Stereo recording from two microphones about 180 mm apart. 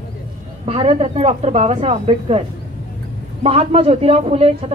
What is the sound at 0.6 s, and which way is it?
A woman's voice, 35° right (ahead or behind).